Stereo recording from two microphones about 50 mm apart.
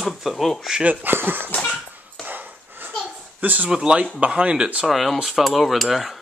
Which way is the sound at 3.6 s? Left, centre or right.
Centre.